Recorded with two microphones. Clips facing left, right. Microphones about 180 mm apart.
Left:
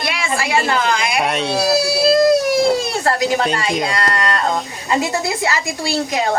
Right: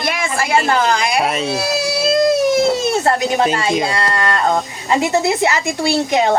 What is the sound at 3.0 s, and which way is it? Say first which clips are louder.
A woman's voice: right 2 dB; 25° right (ahead or behind).